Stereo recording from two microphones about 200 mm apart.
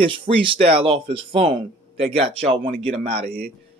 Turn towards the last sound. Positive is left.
turn(degrees=-50)  # may be behind; listen again after turning